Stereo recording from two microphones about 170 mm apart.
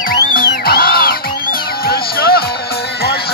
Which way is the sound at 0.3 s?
60° left (ahead or behind).